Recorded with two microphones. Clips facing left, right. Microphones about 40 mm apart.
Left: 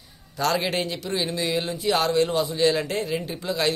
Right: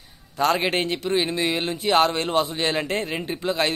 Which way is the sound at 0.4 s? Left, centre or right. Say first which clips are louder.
Right 3 dB; right.